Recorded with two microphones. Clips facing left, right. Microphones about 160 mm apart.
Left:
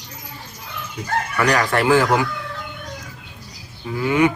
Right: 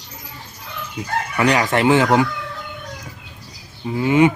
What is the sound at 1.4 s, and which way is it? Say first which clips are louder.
Speech: right 2 dB; 20° right (ahead or behind).